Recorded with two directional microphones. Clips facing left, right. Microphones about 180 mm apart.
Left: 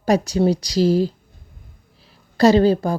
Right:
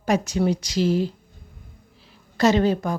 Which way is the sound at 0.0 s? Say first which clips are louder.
Left 4 dB; 35° left (ahead or behind).